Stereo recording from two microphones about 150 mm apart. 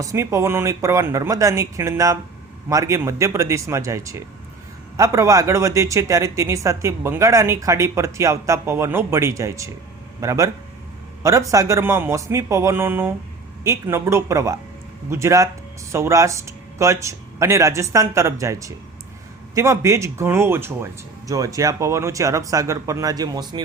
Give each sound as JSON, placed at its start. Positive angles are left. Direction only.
{"t": 0.0, "sound": "speech", "side_deg": -20}